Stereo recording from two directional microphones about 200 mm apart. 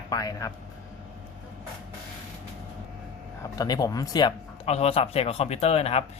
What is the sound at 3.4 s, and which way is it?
Speech, 20° left (ahead or behind).